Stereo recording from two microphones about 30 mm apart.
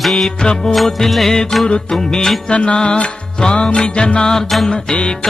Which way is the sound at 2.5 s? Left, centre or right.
Left.